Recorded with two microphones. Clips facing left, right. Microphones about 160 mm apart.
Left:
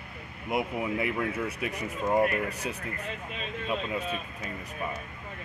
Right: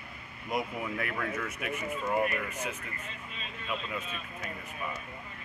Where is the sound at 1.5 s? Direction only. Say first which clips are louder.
Left 2 dB; 35° left (ahead or behind).